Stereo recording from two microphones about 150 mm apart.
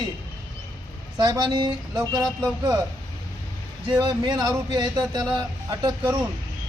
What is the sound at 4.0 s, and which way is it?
Speech, 30° right (ahead or behind).